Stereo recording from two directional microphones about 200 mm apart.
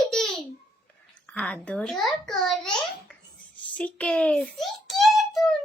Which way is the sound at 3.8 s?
5° left (ahead or behind).